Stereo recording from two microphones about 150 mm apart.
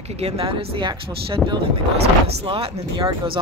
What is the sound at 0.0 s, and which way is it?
A woman's voice, 45° right (ahead or behind).